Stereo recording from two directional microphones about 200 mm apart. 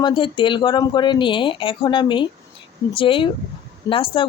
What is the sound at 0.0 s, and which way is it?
A woman's voice, 25° left (ahead or behind).